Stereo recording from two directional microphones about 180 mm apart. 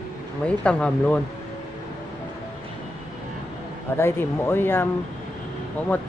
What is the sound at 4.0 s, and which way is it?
Speech, 15° left (ahead or behind).